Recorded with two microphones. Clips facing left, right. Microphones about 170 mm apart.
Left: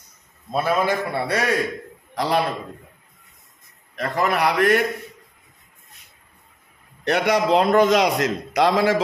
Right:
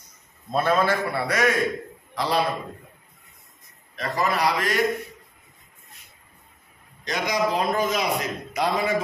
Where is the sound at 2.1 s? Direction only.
45° left (ahead or behind).